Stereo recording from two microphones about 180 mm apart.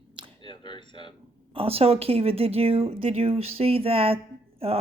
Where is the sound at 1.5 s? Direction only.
35° right (ahead or behind).